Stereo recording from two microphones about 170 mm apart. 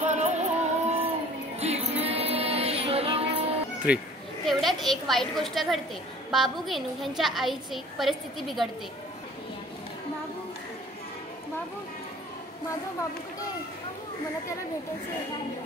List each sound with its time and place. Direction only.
0.0 s music: 45° right (ahead or behind)
3.9 s a woman's voice: 5° right (ahead or behind)